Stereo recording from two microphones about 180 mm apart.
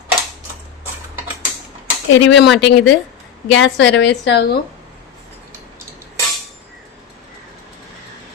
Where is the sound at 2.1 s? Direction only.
85° left.